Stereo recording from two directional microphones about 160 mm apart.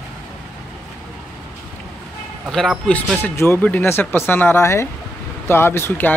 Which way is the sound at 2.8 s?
10° left (ahead or behind).